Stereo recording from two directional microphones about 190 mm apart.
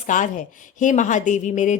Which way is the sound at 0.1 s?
45° left (ahead or behind).